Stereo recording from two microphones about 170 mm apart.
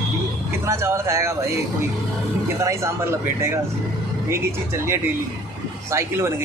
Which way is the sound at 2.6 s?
15° right (ahead or behind).